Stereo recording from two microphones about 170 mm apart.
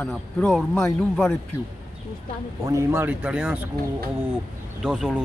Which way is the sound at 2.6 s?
15° right (ahead or behind).